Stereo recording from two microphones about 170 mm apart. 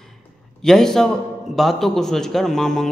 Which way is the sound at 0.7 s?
5° left (ahead or behind).